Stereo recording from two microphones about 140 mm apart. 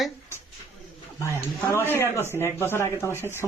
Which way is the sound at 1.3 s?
15° left (ahead or behind).